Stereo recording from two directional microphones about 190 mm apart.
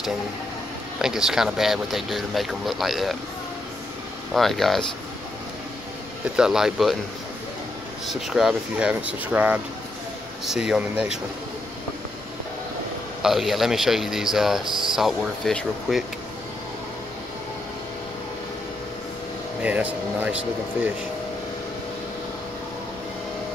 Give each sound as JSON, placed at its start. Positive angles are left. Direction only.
{"t": 1.0, "sound": "speech", "side_deg": -5}
{"t": 4.3, "sound": "speech", "side_deg": 0}
{"t": 6.3, "sound": "speech", "side_deg": -5}
{"t": 8.1, "sound": "speech", "side_deg": 0}
{"t": 13.2, "sound": "speech", "side_deg": 0}
{"t": 19.6, "sound": "speech", "side_deg": -10}